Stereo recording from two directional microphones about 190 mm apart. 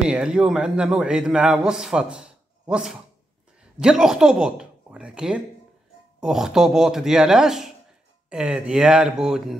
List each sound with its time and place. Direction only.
0.0 s a man's voice: 5° right (ahead or behind)